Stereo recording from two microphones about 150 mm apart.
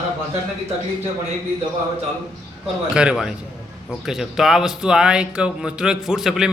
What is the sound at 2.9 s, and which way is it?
A man's voice, 5° right (ahead or behind).